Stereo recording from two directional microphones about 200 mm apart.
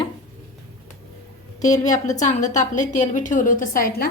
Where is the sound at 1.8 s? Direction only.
35° left (ahead or behind).